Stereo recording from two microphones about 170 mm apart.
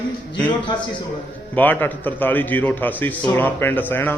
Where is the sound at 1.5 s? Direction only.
10° left (ahead or behind).